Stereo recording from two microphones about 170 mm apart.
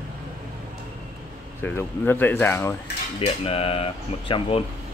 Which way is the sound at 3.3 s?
35° left (ahead or behind).